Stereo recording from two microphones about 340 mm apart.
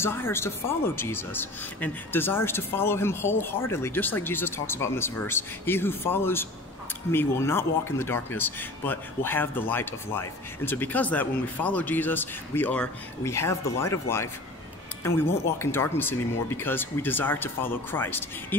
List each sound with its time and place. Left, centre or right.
0.0 s speech: centre